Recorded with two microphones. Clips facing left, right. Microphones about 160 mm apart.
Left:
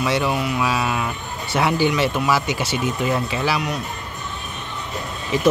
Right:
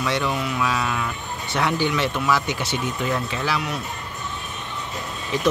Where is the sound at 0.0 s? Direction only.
10° left (ahead or behind).